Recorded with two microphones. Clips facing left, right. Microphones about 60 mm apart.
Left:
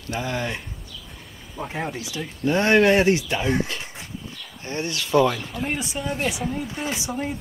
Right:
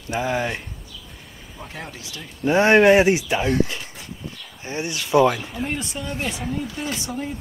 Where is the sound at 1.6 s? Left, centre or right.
Centre.